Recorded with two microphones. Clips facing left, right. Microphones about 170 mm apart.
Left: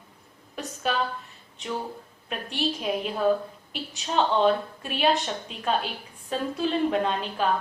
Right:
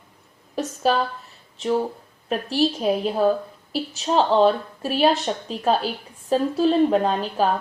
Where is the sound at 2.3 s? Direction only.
35° right (ahead or behind).